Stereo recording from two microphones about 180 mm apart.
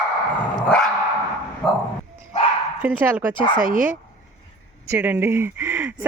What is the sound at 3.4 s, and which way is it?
Speech, 50° right (ahead or behind).